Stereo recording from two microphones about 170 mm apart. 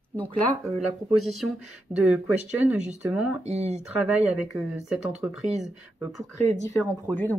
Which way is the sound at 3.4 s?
40° right (ahead or behind).